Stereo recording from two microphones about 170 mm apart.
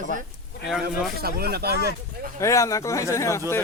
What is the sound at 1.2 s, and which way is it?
Speech, 65° right (ahead or behind).